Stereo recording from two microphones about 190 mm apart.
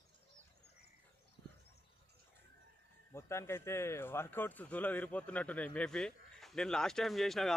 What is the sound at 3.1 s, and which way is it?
Speech, 15° left (ahead or behind).